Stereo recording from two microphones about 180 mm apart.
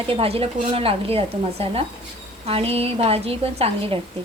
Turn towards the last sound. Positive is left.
turn(degrees=-30)  # may be behind; listen again after turning